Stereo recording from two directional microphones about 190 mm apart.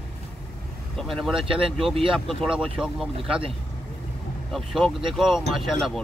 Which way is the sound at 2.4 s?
5° right (ahead or behind).